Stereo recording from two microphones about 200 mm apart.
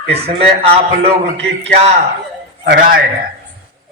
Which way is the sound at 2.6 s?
50° right (ahead or behind).